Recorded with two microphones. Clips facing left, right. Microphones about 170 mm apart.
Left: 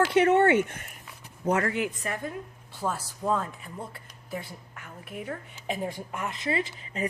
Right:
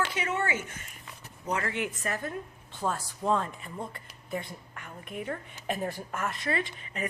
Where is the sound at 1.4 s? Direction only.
45° left (ahead or behind).